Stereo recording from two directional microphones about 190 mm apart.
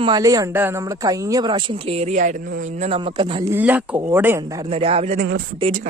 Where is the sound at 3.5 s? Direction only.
10° right (ahead or behind).